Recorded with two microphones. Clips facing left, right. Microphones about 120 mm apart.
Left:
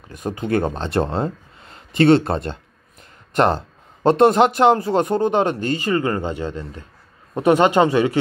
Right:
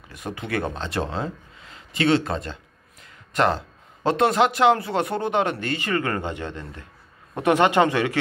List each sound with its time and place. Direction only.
0.1 s speech: 35° left (ahead or behind)
0.7 s a sound: 50° left (ahead or behind)
4.0 s speech: 50° left (ahead or behind)
4.9 s speech: 35° left (ahead or behind)